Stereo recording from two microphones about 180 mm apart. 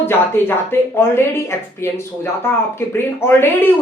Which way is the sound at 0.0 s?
10° left (ahead or behind).